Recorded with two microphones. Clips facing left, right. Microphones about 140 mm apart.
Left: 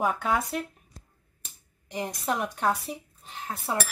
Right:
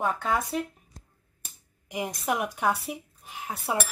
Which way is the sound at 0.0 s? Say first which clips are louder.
Left 1 dB; 5° left (ahead or behind).